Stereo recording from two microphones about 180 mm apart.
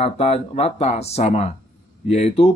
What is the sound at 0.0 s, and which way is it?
Speech, 35° left (ahead or behind).